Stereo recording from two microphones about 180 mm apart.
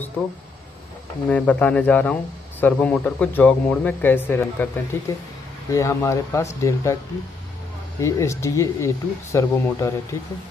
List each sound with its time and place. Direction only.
1.3 s speech: 10° left (ahead or behind)
8.0 s speech: 15° left (ahead or behind)